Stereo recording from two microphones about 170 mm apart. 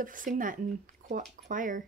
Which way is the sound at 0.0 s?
50° right (ahead or behind).